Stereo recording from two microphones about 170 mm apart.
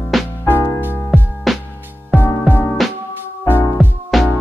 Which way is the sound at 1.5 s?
Centre (ahead or behind).